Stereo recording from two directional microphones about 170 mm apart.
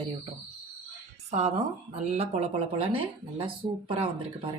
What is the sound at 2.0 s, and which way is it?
Speech, 40° right (ahead or behind).